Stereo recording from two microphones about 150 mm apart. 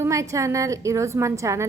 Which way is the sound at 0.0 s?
20° right (ahead or behind).